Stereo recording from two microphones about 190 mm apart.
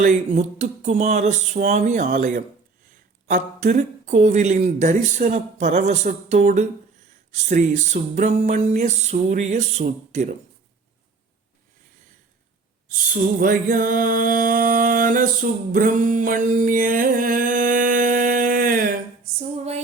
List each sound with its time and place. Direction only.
0.0 s speech: 40° right (ahead or behind)
13.4 s music: 45° right (ahead or behind)
19.2 s female singing: 35° right (ahead or behind)